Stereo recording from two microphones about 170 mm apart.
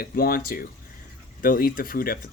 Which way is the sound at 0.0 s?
60° left (ahead or behind).